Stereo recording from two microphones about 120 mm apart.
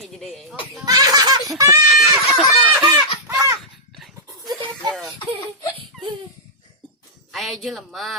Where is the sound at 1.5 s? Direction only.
25° right (ahead or behind).